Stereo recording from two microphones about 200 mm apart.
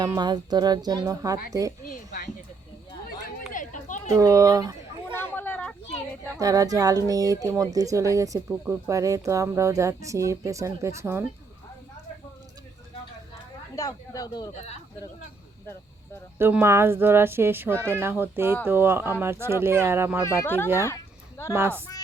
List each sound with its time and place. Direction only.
0.0 s a woman's voice: 20° right (ahead or behind)
1.9 s speech: 50° left (ahead or behind)
3.5 s a sound: 40° left (ahead or behind)
4.2 s speech: 15° right (ahead or behind)
5.3 s a sound: 10° left (ahead or behind)
6.3 s speech: 15° right (ahead or behind)
13.7 s speech: 15° left (ahead or behind)
16.4 s speech: 10° right (ahead or behind)
20.4 s speech: 10° left (ahead or behind)
20.8 s a sound: 15° left (ahead or behind)
21.5 s speech: 10° right (ahead or behind)